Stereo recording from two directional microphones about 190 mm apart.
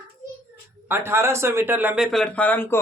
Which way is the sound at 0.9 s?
10° right (ahead or behind).